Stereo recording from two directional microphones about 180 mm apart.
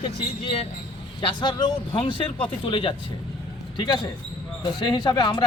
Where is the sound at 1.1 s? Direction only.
25° left (ahead or behind).